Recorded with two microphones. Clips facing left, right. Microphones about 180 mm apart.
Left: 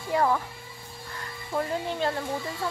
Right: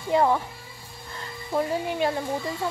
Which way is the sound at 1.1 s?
25° right (ahead or behind).